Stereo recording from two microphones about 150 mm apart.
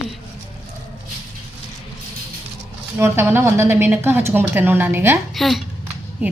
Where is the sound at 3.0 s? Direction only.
15° right (ahead or behind).